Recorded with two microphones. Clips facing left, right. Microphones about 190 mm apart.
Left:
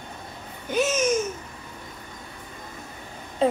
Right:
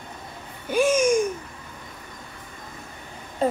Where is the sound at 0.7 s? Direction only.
10° right (ahead or behind).